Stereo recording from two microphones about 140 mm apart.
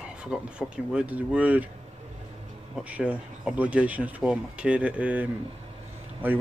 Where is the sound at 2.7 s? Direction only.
10° right (ahead or behind).